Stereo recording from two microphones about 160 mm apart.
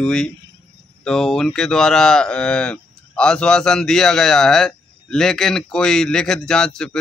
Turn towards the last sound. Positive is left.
turn(degrees=5)  # may be behind; listen again after turning